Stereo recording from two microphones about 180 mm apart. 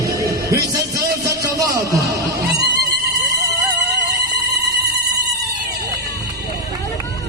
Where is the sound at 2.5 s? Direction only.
65° right (ahead or behind).